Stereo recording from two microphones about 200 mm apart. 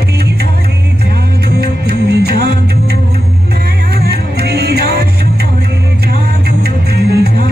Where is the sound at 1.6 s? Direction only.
55° right (ahead or behind).